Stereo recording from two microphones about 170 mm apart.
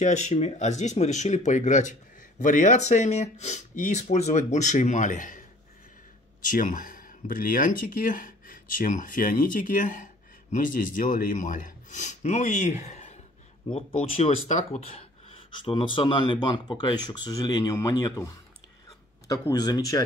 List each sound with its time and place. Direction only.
0.0 s speech: 40° left (ahead or behind)
6.5 s speech: 55° left (ahead or behind); by 19.8 s 25° left (ahead or behind)